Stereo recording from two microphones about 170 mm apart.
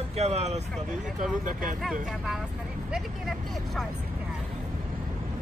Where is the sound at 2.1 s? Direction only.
Centre (ahead or behind).